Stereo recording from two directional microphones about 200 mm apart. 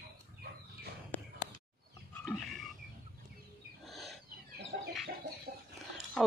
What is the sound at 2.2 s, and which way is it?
Pig, centre (ahead or behind).